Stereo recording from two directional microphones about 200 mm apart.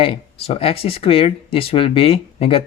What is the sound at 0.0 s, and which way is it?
Speech, 25° left (ahead or behind).